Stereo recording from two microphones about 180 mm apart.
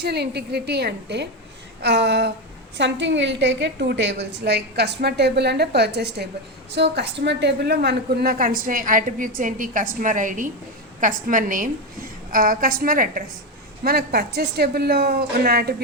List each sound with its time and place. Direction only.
0.0 s a woman's voice: 65° right (ahead or behind)
2.7 s a woman's voice: 85° right; by 15.7 s 60° right (ahead or behind)